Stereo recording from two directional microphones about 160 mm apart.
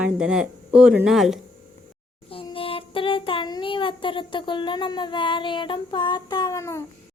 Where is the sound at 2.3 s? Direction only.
35° left (ahead or behind).